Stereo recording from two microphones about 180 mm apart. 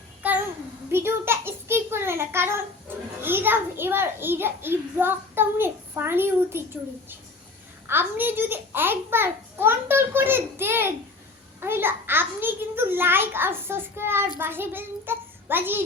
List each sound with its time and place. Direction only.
0.9 s a sound: 15° right (ahead or behind)
3.2 s a child's voice: 10° right (ahead or behind)
7.9 s a child's voice: 10° right (ahead or behind)